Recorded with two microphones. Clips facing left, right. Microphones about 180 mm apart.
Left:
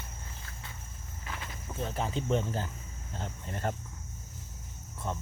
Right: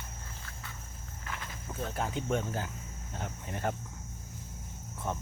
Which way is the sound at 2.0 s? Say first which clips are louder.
Left 2 dB; 5° right (ahead or behind).